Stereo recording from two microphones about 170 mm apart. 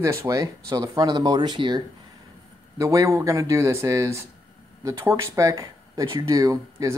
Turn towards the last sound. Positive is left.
turn(degrees=-20)  # may be behind; listen again after turning